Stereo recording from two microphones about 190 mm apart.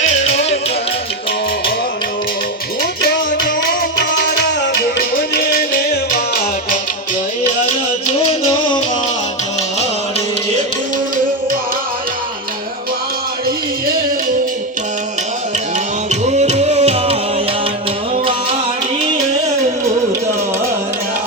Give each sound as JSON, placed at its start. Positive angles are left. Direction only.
{"t": 0.0, "sound": "music", "side_deg": 35}
{"t": 3.0, "sound": "music", "side_deg": 50}
{"t": 16.0, "sound": "music", "side_deg": -35}